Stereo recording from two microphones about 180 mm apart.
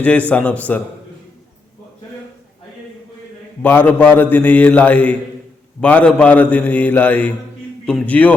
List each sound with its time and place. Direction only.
0.0 s a man's voice: 5° left (ahead or behind)
3.6 s a man's voice: 10° left (ahead or behind)